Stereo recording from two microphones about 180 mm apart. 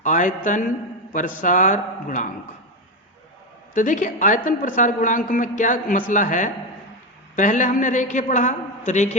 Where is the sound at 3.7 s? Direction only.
45° left (ahead or behind).